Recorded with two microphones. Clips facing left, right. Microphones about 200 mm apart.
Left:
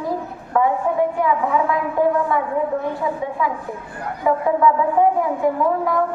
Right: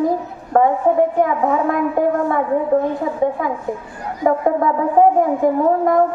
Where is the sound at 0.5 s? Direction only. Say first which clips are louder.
Right 4 dB; 45° right (ahead or behind).